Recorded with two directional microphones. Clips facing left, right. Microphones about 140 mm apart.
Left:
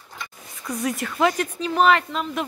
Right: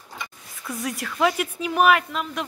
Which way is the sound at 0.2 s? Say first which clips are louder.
Left 1 dB; centre (ahead or behind).